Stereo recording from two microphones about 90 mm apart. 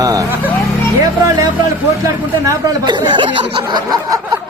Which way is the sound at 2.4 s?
35° right (ahead or behind).